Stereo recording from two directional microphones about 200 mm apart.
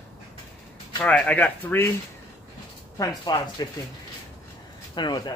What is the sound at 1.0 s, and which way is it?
Speech, 5° left (ahead or behind).